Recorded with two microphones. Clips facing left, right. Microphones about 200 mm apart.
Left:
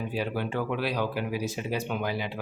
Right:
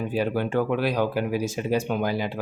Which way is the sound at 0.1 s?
45° right (ahead or behind).